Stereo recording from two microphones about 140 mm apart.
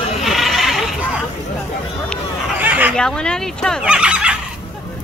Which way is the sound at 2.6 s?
10° right (ahead or behind).